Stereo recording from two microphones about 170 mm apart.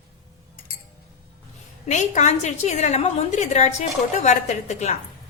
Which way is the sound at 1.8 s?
45° left (ahead or behind).